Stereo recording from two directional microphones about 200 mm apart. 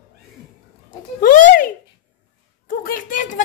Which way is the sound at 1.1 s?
40° left (ahead or behind).